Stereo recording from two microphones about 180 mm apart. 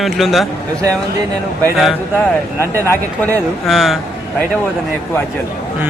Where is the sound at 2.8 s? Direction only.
15° left (ahead or behind).